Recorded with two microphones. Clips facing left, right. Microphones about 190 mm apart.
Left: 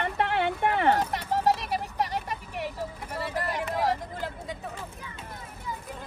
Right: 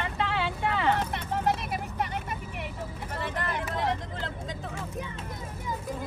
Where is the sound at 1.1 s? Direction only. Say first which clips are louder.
Left 3 dB; 35° left (ahead or behind).